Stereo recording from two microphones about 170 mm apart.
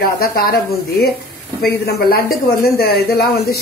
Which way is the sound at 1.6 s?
65° left (ahead or behind).